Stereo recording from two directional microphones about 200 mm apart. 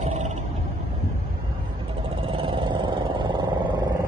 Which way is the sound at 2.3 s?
25° right (ahead or behind).